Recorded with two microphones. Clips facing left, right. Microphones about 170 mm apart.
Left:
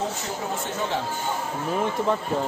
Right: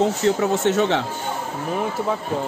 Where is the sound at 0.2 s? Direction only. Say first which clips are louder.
Right 11 dB; 80° right.